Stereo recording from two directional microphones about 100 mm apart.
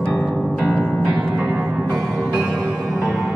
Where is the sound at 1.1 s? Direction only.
10° right (ahead or behind).